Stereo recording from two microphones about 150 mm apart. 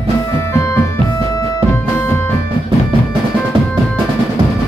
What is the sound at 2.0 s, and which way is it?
Music, 10° left (ahead or behind).